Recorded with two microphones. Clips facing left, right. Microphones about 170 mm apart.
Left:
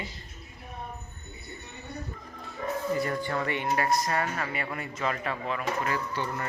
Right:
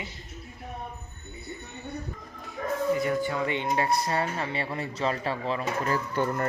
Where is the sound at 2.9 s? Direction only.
Centre (ahead or behind); by 6.0 s 35° right (ahead or behind).